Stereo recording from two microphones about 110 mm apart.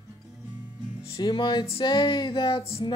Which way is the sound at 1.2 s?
45° left (ahead or behind).